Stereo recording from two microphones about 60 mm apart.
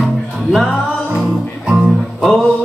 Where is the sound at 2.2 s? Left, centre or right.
Centre.